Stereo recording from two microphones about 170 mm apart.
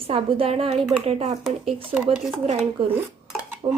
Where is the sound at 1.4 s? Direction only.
Centre (ahead or behind).